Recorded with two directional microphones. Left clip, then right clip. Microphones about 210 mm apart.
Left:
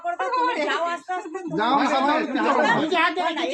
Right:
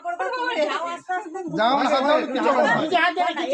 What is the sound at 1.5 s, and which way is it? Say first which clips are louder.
Speech: right 1 dB; 45° right (ahead or behind).